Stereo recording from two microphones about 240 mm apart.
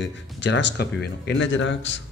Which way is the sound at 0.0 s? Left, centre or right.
Left.